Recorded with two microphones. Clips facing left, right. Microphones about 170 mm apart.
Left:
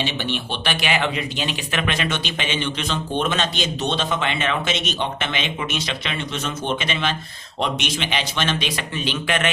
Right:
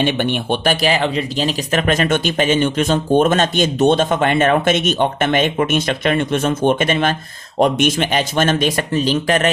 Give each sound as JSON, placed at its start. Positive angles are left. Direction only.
{"t": 0.0, "sound": "speech", "side_deg": -55}